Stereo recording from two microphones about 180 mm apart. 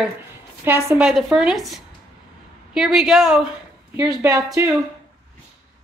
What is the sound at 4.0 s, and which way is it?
Speech, 15° right (ahead or behind).